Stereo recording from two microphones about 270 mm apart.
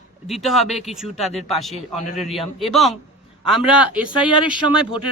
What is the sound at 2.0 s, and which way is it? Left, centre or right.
Speech, left.